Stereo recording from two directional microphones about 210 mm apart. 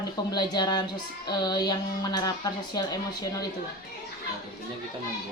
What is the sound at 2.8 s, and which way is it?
Speech, 20° left (ahead or behind).